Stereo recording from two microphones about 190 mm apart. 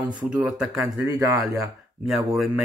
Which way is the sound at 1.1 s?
20° right (ahead or behind).